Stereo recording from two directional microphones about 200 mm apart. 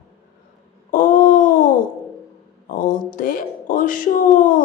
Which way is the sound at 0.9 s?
45° left (ahead or behind).